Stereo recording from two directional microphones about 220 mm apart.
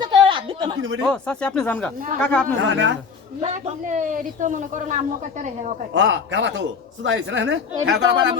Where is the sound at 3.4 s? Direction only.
35° right (ahead or behind).